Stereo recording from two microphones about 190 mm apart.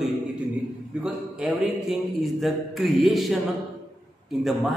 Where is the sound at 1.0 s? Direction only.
5° right (ahead or behind).